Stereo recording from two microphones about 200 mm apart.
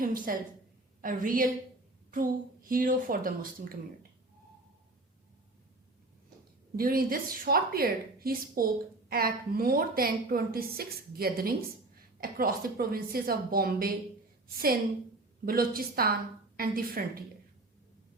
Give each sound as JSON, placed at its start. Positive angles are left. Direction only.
{"t": 0.0, "sound": "a woman's voice", "side_deg": -45}
{"t": 6.7, "sound": "a woman's voice", "side_deg": -45}
{"t": 15.4, "sound": "a woman's voice", "side_deg": -45}